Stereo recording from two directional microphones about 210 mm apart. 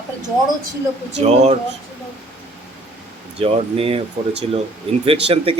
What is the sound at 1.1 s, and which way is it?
Speech, 30° right (ahead or behind).